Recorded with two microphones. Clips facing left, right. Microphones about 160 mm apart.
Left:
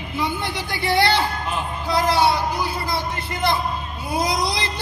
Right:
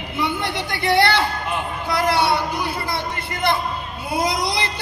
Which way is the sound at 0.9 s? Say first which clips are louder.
Right 2 dB; 60° right (ahead or behind).